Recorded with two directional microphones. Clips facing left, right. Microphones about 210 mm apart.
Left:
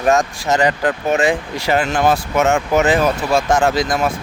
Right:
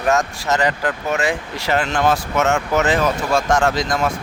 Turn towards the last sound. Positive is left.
turn(degrees=5)  # may be behind; listen again after turning